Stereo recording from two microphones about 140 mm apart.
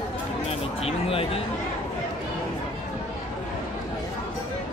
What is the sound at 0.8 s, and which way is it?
Speech, 45° left (ahead or behind).